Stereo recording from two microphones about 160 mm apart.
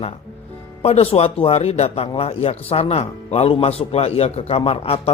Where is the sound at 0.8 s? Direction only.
40° left (ahead or behind).